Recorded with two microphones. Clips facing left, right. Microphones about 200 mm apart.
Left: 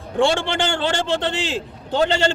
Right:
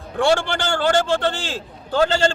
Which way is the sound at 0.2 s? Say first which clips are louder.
Even; 20° left (ahead or behind).